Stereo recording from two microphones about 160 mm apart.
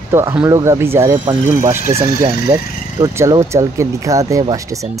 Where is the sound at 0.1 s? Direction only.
15° right (ahead or behind).